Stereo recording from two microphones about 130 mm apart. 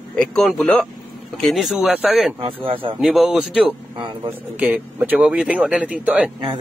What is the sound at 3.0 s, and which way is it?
Speech, 5° right (ahead or behind).